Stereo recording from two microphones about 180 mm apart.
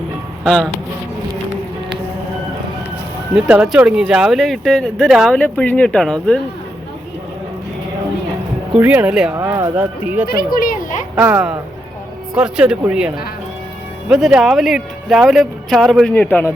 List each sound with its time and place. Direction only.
0.4 s speech: centre (ahead or behind)
3.3 s speech: 5° right (ahead or behind)
8.8 s speech: 10° right (ahead or behind)
9.3 s speech: 15° right (ahead or behind)
10.2 s speech: 55° left (ahead or behind)
11.1 s speech: 10° right (ahead or behind); by 16.5 s 10° left (ahead or behind)